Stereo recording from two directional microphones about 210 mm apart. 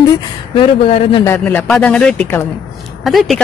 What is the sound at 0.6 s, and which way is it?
Speech, 25° left (ahead or behind).